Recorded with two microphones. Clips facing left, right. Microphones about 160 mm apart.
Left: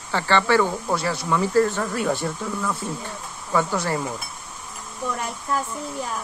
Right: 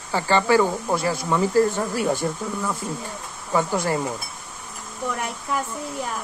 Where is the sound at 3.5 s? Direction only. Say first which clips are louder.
Right 1 dB; 25° right (ahead or behind).